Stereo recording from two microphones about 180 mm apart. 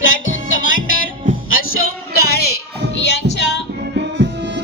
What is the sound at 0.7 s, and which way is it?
Music, 50° left (ahead or behind).